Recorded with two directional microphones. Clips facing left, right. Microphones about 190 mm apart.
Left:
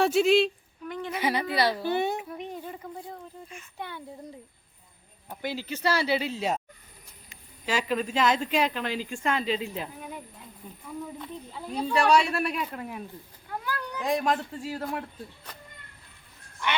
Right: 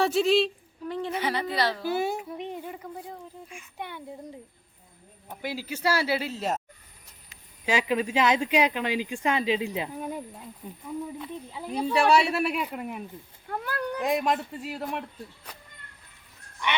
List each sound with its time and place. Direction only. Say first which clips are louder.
0.0 s speech: left 1 dB; centre (ahead or behind)
0.9 s a sound: right 3 dB; 30° right (ahead or behind)
1.1 s speech: left 3 dB; 10° left (ahead or behind)
1.8 s a woman's voice: even; 5° right (ahead or behind)
2.4 s a sound: right 2 dB; 15° right (ahead or behind)
3.5 s speech: right 1 dB; 15° right (ahead or behind)
5.4 s speech: even; 5° right (ahead or behind)
7.6 s speech: right 2 dB; 10° right (ahead or behind)
11.2 s speech: right 2 dB; 10° right (ahead or behind)
13.7 s speech: right 3 dB; 60° right (ahead or behind)
14.0 s speech: even; centre (ahead or behind)